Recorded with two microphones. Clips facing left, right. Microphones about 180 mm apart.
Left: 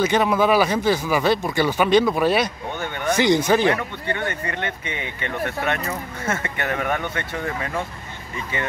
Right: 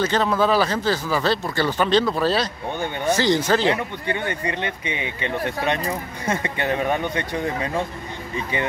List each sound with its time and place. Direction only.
0.0 s speech: 10° left (ahead or behind)
3.6 s speech: 15° right (ahead or behind)